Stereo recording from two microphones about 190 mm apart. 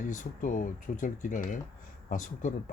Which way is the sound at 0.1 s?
40° left (ahead or behind).